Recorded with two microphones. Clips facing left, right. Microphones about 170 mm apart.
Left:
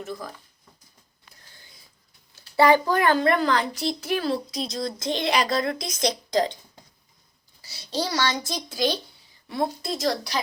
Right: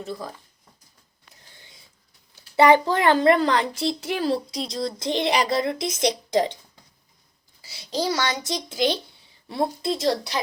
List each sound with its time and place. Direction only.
0.0 s a child's voice: 30° right (ahead or behind)
2.3 s a child's voice: 20° right (ahead or behind)
7.7 s a child's voice: 15° right (ahead or behind)